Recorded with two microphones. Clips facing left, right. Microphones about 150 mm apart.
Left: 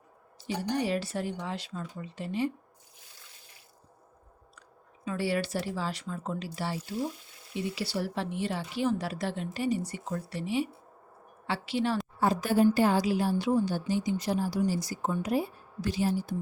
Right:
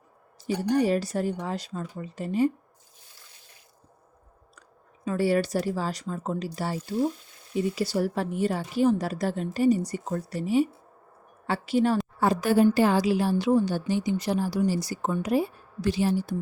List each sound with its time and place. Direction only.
0.3 s a woman's voice: 45° right (ahead or behind)
5.0 s a woman's voice: 45° right (ahead or behind)
12.2 s a woman's voice: 75° right (ahead or behind)